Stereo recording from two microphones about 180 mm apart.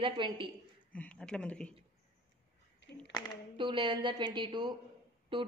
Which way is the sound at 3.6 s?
25° right (ahead or behind).